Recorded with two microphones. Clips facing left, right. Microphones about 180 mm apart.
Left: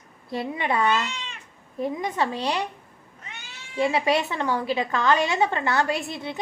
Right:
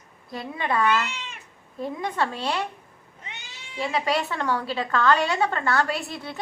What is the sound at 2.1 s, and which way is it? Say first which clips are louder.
Speech: right 1 dB; 15° left (ahead or behind).